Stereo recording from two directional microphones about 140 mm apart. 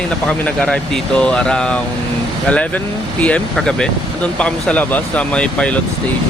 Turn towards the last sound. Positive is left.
turn(degrees=10)  # may be behind; listen again after turning